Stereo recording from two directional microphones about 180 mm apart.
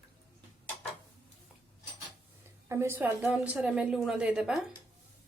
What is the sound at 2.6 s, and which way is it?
A woman's voice, 15° right (ahead or behind).